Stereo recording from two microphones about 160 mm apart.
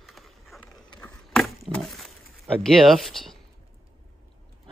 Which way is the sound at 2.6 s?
Centre (ahead or behind).